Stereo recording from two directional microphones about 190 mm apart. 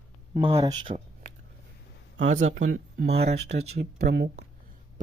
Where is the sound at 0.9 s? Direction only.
35° right (ahead or behind).